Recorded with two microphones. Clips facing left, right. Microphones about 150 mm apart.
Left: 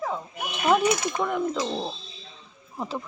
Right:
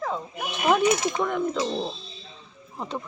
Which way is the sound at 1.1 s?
Centre (ahead or behind).